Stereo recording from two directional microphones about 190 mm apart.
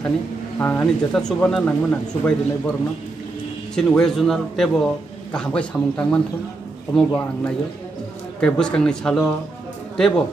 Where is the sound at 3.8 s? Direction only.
5° left (ahead or behind).